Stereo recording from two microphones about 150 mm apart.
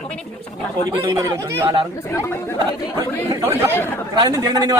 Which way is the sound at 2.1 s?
15° left (ahead or behind).